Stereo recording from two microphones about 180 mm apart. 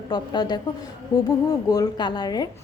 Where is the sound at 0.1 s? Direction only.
25° left (ahead or behind).